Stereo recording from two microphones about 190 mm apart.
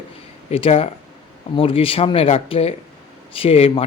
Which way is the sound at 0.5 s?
30° left (ahead or behind).